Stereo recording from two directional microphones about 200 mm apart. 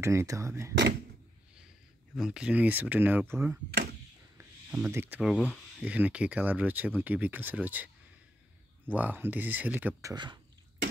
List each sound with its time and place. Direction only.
0.0 s speech: 15° right (ahead or behind)
2.1 s speech: 5° right (ahead or behind)
5.4 s a sound: 5° left (ahead or behind)
5.9 s speech: 5° right (ahead or behind)
8.9 s speech: 10° right (ahead or behind)
10.1 s speech: 20° right (ahead or behind)